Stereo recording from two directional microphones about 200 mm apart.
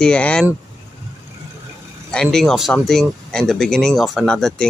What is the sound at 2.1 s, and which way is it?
Speech, 5° left (ahead or behind).